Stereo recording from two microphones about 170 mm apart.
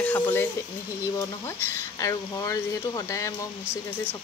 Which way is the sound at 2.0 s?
20° left (ahead or behind).